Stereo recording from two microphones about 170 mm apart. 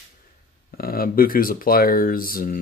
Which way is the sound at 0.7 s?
60° left (ahead or behind).